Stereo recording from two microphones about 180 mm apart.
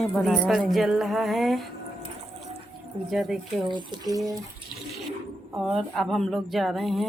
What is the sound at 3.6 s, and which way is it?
Speech, 25° right (ahead or behind).